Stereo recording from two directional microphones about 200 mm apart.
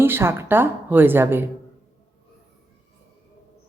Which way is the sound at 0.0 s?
10° right (ahead or behind).